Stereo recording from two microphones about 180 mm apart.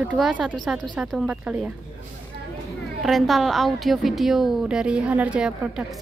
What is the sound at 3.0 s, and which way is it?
A woman's voice, centre (ahead or behind).